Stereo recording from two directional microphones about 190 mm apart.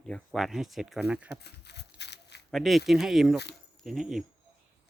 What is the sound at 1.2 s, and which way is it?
Crumpling, 60° left (ahead or behind).